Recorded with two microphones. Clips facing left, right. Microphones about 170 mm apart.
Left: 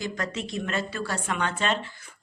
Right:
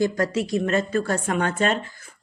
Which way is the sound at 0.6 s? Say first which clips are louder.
Right 8 dB; 45° right (ahead or behind).